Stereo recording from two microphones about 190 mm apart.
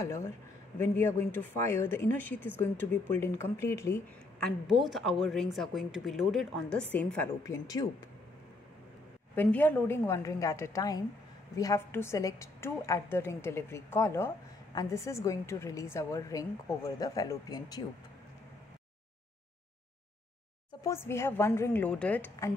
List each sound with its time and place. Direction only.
0.0 s a woman's voice: 15° left (ahead or behind)
9.3 s a woman's voice: 10° left (ahead or behind)
20.8 s a woman's voice: 15° left (ahead or behind)